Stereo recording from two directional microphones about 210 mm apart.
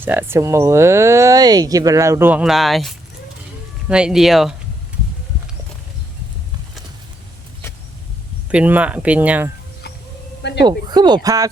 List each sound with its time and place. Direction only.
0.0 s speech: 10° right (ahead or behind)
8.4 s speech: 5° right (ahead or behind)
10.7 s speech: 20° right (ahead or behind)